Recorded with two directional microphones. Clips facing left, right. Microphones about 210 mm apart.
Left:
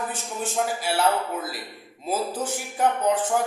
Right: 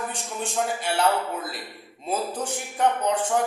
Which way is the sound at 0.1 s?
5° left (ahead or behind).